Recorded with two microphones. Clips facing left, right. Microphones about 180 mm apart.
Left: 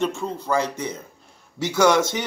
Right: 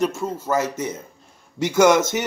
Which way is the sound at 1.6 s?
10° right (ahead or behind).